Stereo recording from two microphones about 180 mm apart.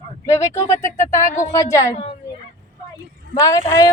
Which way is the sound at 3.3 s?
20° left (ahead or behind).